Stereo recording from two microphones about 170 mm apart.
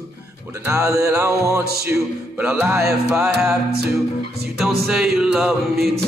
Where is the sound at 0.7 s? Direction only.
20° right (ahead or behind).